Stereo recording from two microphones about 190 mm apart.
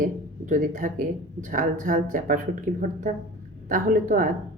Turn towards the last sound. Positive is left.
turn(degrees=-45)  # may be behind; listen again after turning